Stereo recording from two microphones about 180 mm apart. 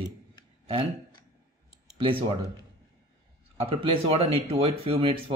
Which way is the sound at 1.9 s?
30° right (ahead or behind).